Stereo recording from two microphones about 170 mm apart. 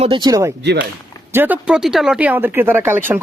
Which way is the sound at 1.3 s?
10° right (ahead or behind).